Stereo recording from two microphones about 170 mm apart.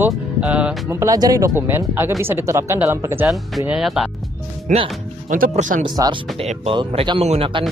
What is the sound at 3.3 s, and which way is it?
Speech, centre (ahead or behind).